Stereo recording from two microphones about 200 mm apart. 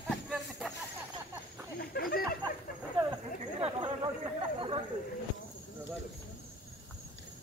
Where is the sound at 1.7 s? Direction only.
50° left (ahead or behind).